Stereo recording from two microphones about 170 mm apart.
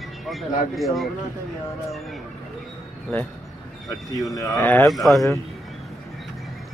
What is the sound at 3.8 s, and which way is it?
Speech, 20° left (ahead or behind).